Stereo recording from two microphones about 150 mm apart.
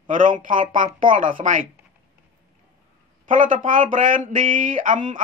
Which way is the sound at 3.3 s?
60° right (ahead or behind).